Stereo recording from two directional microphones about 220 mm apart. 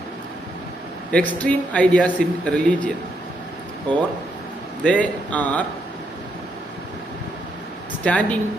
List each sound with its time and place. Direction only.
1.1 s speech: 5° left (ahead or behind)
3.9 s speech: 20° right (ahead or behind)
4.8 s a man's voice: 5° left (ahead or behind)
8.0 s speech: 5° left (ahead or behind)